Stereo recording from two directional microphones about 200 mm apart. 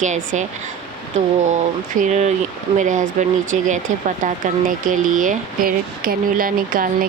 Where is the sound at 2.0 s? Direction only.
35° right (ahead or behind).